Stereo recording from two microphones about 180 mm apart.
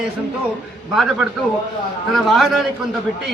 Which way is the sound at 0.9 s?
Centre (ahead or behind).